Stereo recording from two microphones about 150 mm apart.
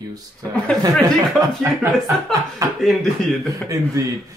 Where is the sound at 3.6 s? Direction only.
20° right (ahead or behind).